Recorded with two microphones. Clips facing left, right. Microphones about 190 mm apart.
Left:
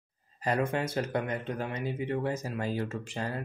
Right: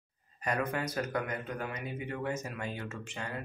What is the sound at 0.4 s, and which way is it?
Speech, 30° left (ahead or behind).